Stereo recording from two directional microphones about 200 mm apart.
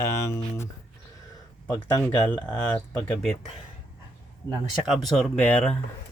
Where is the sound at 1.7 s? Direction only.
20° left (ahead or behind).